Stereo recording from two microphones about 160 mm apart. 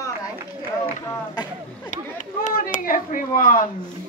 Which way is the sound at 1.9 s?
55° left (ahead or behind).